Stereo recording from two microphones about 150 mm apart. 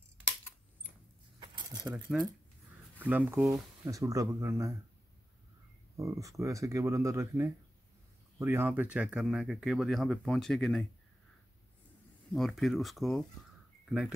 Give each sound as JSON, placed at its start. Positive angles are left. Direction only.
{"t": 1.4, "sound": "a sound", "side_deg": -30}
{"t": 1.9, "sound": "speech", "side_deg": -5}
{"t": 3.8, "sound": "speech", "side_deg": -20}
{"t": 5.9, "sound": "speech", "side_deg": -20}
{"t": 12.3, "sound": "speech", "side_deg": 0}